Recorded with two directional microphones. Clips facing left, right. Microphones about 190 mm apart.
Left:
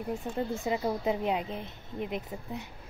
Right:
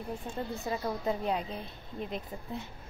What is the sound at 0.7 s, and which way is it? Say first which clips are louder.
A woman's voice: left 2 dB; 20° left (ahead or behind).